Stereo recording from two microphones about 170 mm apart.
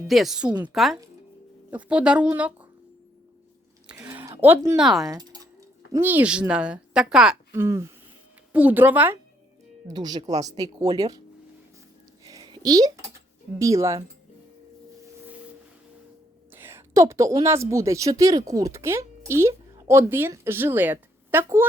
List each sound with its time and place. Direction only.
0.1 s a woman's voice: centre (ahead or behind)
3.8 s a sound: 5° right (ahead or behind)
4.8 s a woman's voice: centre (ahead or behind)
5.0 s a sound: 20° right (ahead or behind)
5.9 s a woman's voice: 10° right (ahead or behind)
7.5 s speech: 15° right (ahead or behind)
9.8 s speech: 25° right (ahead or behind)
12.2 s a sound: 25° right (ahead or behind)
13.6 s speech: 20° right (ahead or behind)
16.5 s a woman's voice: 10° right (ahead or behind)